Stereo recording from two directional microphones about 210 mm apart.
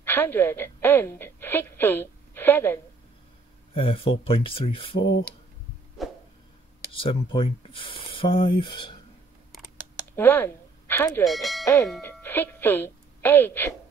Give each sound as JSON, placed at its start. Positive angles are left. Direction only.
{"t": 0.0, "sound": "a woman's voice", "side_deg": 10}
{"t": 3.7, "sound": "speech", "side_deg": 25}
{"t": 6.0, "sound": "a sound", "side_deg": 0}
{"t": 6.9, "sound": "speech", "side_deg": 25}
{"t": 9.8, "sound": "a sound", "side_deg": 15}
{"t": 11.9, "sound": "speech", "side_deg": 10}